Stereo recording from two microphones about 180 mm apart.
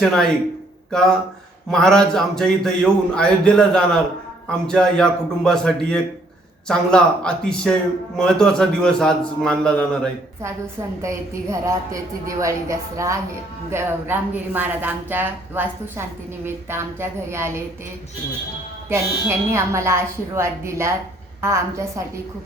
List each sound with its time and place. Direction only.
0.0 s a man's voice: 5° left (ahead or behind)
10.4 s a woman's voice: 15° right (ahead or behind)
18.9 s a woman's voice: 15° right (ahead or behind)